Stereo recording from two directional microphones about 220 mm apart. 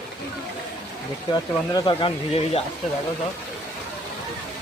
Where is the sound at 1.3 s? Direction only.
20° left (ahead or behind).